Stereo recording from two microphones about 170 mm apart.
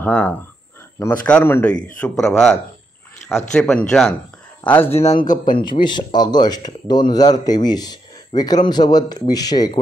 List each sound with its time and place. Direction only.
0.0 s a man's voice: 10° left (ahead or behind)
5.4 s speech: 25° left (ahead or behind)